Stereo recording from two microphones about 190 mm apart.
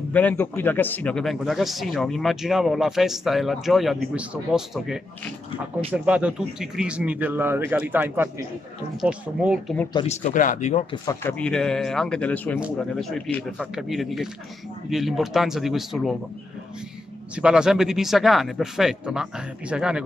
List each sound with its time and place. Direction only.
0.1 s speech: 10° left (ahead or behind)
6.0 s a man's voice: 5° right (ahead or behind)
9.9 s speech: 35° left (ahead or behind)
11.1 s speech: 10° left (ahead or behind)
12.5 s speech: 5° right (ahead or behind)
17.4 s speech: 5° right (ahead or behind)